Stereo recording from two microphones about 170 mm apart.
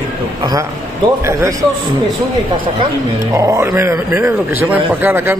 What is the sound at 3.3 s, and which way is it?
A man's voice, 15° right (ahead or behind).